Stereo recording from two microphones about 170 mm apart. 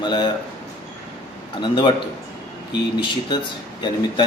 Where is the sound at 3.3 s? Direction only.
25° left (ahead or behind).